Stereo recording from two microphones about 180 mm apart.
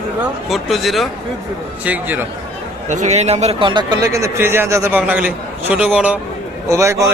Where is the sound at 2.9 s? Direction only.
40° right (ahead or behind).